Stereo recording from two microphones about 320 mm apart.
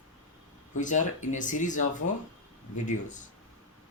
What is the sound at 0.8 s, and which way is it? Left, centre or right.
Speech, left.